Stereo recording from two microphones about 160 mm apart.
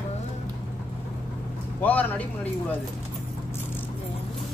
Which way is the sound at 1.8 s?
10° left (ahead or behind).